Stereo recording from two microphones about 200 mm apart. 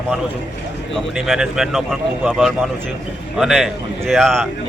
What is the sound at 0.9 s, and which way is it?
A man's voice, centre (ahead or behind).